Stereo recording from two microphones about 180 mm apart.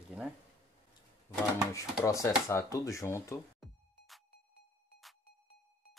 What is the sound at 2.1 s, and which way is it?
Speech, 15° left (ahead or behind).